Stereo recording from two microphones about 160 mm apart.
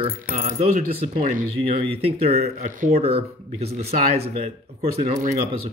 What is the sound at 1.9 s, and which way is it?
Speech, 40° right (ahead or behind).